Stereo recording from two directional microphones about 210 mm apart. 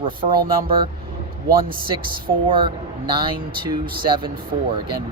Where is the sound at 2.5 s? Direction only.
25° right (ahead or behind).